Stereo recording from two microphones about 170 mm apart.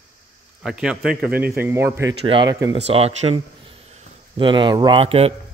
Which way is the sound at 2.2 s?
30° right (ahead or behind).